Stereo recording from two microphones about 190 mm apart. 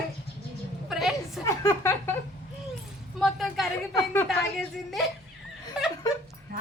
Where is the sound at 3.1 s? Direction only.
Centre (ahead or behind).